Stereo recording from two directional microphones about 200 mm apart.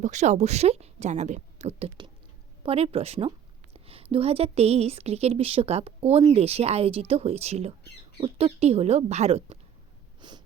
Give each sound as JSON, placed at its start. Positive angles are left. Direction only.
{"t": 0.0, "sound": "a woman's voice", "side_deg": -35}
{"t": 10.2, "sound": "snort", "side_deg": -20}